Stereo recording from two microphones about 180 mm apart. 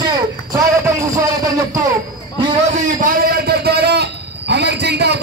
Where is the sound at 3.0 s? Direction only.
55° right (ahead or behind).